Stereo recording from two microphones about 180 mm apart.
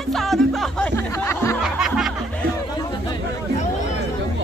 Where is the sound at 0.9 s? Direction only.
15° left (ahead or behind).